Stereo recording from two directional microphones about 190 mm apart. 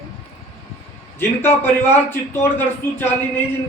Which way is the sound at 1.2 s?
10° left (ahead or behind).